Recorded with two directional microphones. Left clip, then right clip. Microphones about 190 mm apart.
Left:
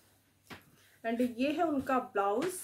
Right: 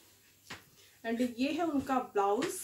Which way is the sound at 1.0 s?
25° left (ahead or behind).